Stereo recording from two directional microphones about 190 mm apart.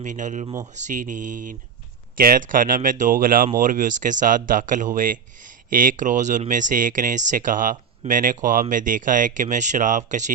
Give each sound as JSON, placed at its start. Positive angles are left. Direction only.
{"t": 0.0, "sound": "speech", "side_deg": -40}